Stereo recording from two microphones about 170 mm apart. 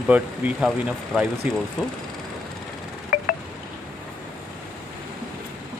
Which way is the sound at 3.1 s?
60° left (ahead or behind).